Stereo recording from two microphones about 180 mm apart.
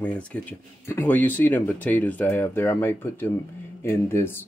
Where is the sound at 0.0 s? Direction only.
5° left (ahead or behind).